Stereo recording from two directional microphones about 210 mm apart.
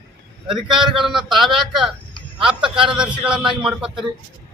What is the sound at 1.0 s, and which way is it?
A man's voice, centre (ahead or behind).